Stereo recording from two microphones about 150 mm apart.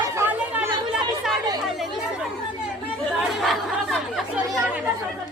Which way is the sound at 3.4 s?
Centre (ahead or behind).